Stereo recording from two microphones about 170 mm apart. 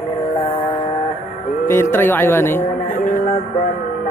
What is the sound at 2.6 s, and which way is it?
Music, 50° left (ahead or behind).